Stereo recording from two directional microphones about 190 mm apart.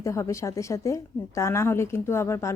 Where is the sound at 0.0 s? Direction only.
15° left (ahead or behind).